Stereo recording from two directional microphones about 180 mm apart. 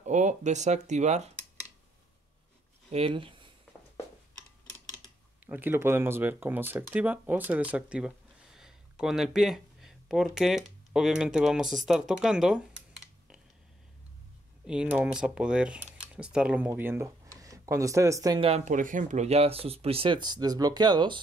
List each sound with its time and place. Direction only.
0.0 s speech: 40° right (ahead or behind)
2.9 s speech: 30° right (ahead or behind)
5.5 s speech: 10° right (ahead or behind)
14.7 s speech: 5° right (ahead or behind)
18.5 s speech: 45° right (ahead or behind); by 21.2 s 25° right (ahead or behind)